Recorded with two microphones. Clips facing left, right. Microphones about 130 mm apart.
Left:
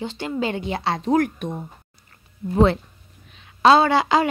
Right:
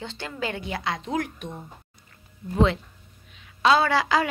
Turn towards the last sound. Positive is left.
turn(degrees=25)  # may be behind; listen again after turning